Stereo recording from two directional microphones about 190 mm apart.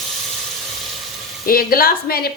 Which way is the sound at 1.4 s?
50° left (ahead or behind).